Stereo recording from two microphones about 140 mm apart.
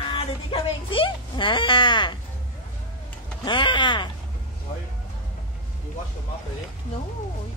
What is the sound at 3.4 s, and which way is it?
Speech, 35° left (ahead or behind).